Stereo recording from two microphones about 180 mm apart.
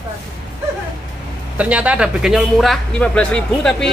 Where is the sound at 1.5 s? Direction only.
10° right (ahead or behind).